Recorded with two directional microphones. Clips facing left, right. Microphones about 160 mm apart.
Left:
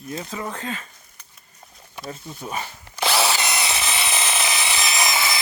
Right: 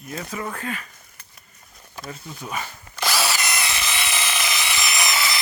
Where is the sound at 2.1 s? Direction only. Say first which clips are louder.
Left 1 dB; 30° left (ahead or behind).